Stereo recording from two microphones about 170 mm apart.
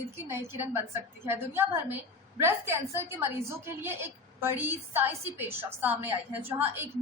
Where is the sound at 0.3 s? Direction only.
15° right (ahead or behind).